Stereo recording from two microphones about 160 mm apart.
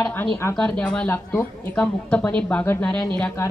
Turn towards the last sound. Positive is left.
turn(degrees=10)  # may be behind; listen again after turning